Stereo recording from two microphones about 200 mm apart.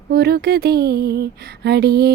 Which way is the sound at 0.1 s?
50° right (ahead or behind).